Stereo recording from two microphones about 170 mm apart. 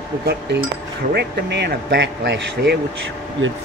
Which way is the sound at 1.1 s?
80° right.